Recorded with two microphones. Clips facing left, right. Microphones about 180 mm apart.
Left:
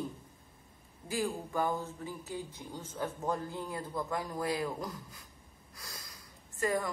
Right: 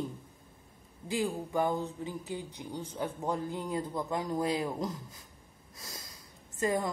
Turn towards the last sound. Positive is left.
turn(degrees=-20)  # may be behind; listen again after turning